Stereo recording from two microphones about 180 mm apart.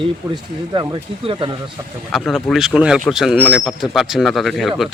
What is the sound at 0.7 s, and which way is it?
Speech, 25° right (ahead or behind).